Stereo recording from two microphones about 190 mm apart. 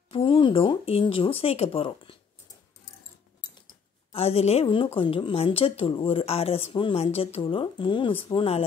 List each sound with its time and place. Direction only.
0.1 s a woman's voice: 25° left (ahead or behind)
4.1 s a woman's voice: 30° left (ahead or behind)